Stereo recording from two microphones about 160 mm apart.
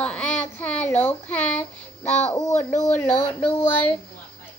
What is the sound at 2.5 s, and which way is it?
Speech, 50° left (ahead or behind).